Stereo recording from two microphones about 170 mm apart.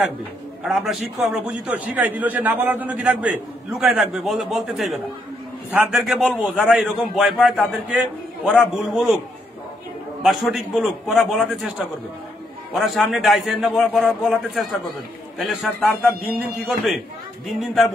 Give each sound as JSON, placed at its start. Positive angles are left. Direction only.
{"t": 0.7, "sound": "a man's voice", "side_deg": 0}
{"t": 10.2, "sound": "a man's voice", "side_deg": 0}
{"t": 12.7, "sound": "a man's voice", "side_deg": 0}